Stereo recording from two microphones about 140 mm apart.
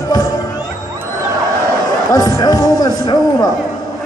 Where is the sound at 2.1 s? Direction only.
25° left (ahead or behind).